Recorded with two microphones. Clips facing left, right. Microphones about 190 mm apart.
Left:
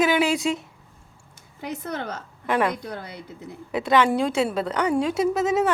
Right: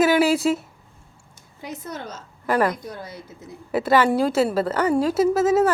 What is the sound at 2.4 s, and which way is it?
Speech, centre (ahead or behind).